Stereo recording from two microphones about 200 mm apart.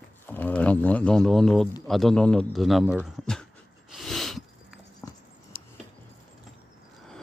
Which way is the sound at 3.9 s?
Centre (ahead or behind).